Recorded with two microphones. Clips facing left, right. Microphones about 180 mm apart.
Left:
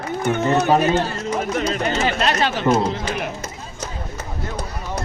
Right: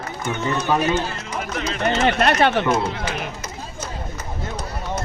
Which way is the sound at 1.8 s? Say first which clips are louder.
Right 6 dB; 55° right (ahead or behind).